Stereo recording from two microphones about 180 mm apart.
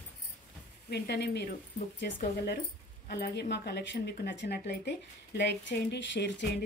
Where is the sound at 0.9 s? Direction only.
65° left (ahead or behind).